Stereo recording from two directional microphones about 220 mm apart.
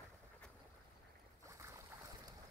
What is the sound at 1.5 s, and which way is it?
Boat, 15° right (ahead or behind).